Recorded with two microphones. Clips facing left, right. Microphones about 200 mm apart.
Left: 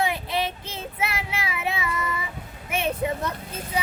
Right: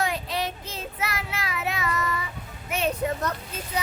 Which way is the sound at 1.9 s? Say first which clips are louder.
Right 1 dB; 10° left (ahead or behind).